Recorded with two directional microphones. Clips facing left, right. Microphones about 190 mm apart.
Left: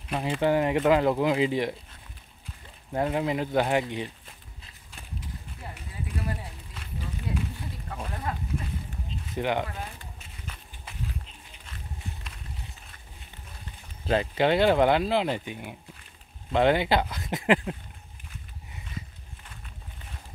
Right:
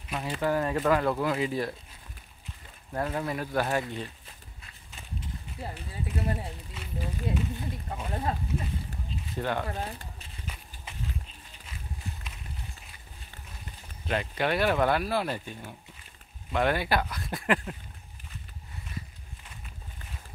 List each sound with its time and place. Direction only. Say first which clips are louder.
0.1 s speech: left 4 dB; 25° left (ahead or behind)
2.9 s speech: left 4 dB; 20° left (ahead or behind)
5.6 s a sound: right 3 dB; 30° right (ahead or behind)
9.3 s speech: left 3 dB; 20° left (ahead or behind)
14.0 s speech: left 5 dB; 30° left (ahead or behind)